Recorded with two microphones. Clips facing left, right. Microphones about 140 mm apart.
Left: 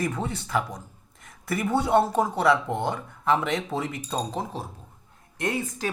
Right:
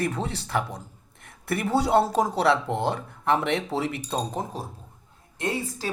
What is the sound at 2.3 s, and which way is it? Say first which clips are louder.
Speech: even; 70° right (ahead or behind).